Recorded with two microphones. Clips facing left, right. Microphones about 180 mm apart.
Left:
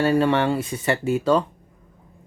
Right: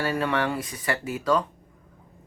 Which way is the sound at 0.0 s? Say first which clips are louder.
Left 7 dB; 30° left (ahead or behind).